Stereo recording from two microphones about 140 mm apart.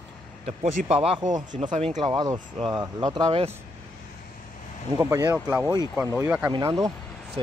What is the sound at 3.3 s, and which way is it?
Speech, 50° right (ahead or behind).